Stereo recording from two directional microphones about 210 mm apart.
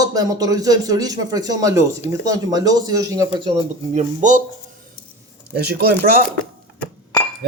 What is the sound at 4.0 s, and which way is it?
Speech, 35° right (ahead or behind).